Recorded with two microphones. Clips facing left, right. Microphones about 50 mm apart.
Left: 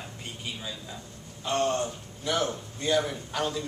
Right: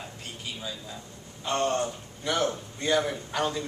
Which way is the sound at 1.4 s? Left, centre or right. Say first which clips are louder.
Even; centre.